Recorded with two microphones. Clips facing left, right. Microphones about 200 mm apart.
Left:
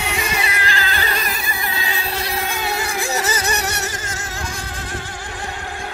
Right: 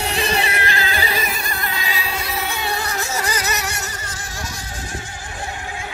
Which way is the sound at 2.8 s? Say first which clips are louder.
Left 2 dB; 10° left (ahead or behind).